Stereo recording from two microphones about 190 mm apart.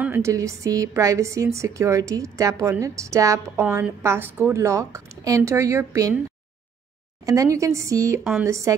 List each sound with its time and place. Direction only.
0.0 s a woman's voice: 15° right (ahead or behind)
7.2 s a woman's voice: 15° right (ahead or behind)